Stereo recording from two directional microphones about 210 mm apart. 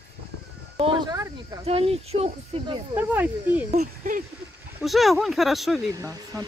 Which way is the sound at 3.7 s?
35° right (ahead or behind).